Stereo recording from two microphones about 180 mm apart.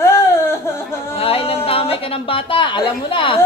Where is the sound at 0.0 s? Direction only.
15° left (ahead or behind).